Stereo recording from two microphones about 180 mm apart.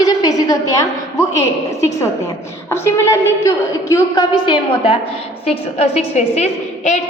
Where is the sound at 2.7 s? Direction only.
15° left (ahead or behind).